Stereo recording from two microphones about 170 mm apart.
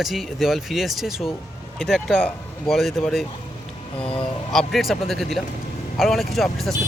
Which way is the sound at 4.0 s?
35° left (ahead or behind).